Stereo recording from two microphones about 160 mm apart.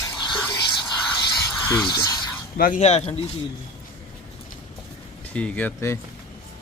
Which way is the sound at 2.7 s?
40° left (ahead or behind).